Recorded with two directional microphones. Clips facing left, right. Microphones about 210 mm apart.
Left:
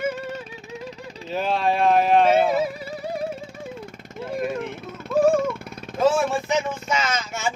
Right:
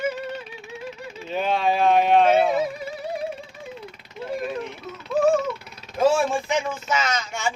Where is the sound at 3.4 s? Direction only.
45° left (ahead or behind).